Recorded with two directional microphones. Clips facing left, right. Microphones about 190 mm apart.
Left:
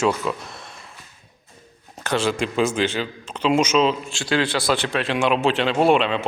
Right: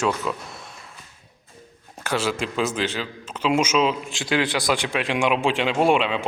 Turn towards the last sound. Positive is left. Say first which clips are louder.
# left 2 dB
turn(degrees=-10)  # may be behind; listen again after turning